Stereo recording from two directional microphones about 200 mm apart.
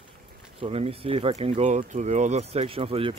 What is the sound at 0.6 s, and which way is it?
Speech, 30° right (ahead or behind).